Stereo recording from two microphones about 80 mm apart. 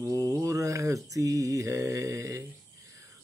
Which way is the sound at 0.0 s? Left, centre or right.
Right.